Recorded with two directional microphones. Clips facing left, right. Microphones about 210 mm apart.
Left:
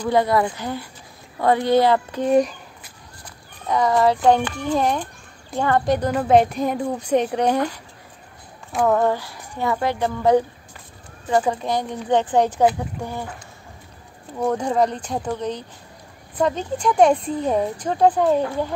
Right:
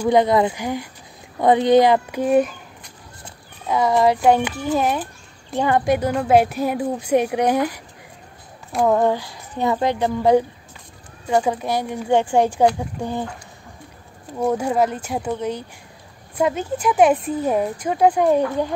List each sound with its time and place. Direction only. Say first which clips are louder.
0.0 s a woman's voice: right 3 dB; 20° right (ahead or behind)
2.2 s a sound: even; centre (ahead or behind)
3.6 s a woman's voice: right 1 dB; 10° right (ahead or behind)
8.8 s a woman's voice: right 1 dB; 15° right (ahead or behind)
14.4 s a woman's voice: right 1 dB; 10° right (ahead or behind)